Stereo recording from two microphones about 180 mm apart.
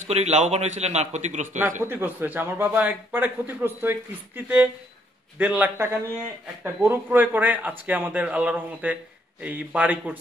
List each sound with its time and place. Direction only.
0.1 s a man's voice: 40° right (ahead or behind)
1.8 s a man's voice: 10° right (ahead or behind)